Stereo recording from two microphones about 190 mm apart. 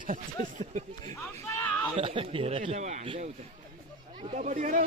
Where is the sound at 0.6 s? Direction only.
40° right (ahead or behind).